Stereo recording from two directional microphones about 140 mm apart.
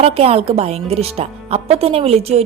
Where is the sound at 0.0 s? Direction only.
45° right (ahead or behind).